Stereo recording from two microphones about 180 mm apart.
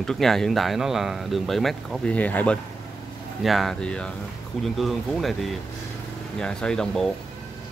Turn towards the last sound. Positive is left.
turn(degrees=5)  # may be behind; listen again after turning